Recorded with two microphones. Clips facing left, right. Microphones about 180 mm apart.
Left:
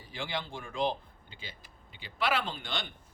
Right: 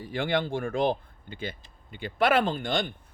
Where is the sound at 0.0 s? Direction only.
55° right (ahead or behind).